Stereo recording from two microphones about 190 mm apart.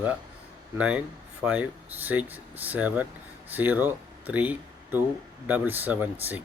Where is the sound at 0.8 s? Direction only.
5° right (ahead or behind).